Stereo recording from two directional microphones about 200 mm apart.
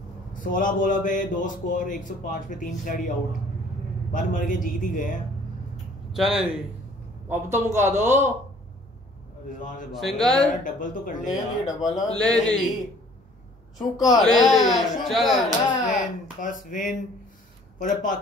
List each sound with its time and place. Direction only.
0.3 s a man's voice: 40° left (ahead or behind)
4.1 s a man's voice: 40° left (ahead or behind)
6.1 s speech: centre (ahead or behind)
7.2 s a man's voice: 15° right (ahead or behind)
9.9 s speech: centre (ahead or behind)
10.5 s a man's voice: 40° left (ahead or behind)
11.3 s speech: 20° left (ahead or behind)
12.2 s speech: 5° left (ahead or behind)
14.2 s speech: centre (ahead or behind)
15.9 s a man's voice: 40° left (ahead or behind)